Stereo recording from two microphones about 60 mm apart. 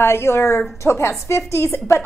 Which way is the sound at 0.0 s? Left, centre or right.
Left.